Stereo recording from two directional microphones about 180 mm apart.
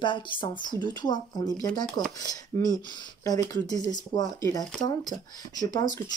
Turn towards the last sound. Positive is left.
turn(degrees=20)  # may be behind; listen again after turning